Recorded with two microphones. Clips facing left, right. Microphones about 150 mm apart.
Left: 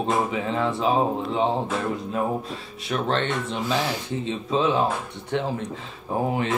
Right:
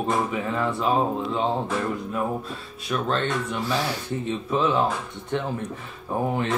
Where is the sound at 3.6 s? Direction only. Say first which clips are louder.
Left 1 dB; 20° left (ahead or behind).